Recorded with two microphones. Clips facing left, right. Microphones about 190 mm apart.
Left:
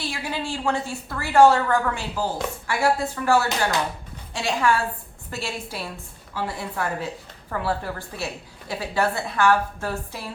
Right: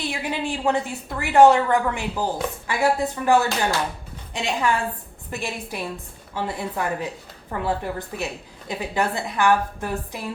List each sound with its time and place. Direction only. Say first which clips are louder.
0.0 s a woman's voice: right 3 dB; 20° right (ahead or behind)